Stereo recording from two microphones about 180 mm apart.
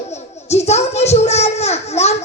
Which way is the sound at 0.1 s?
35° left (ahead or behind).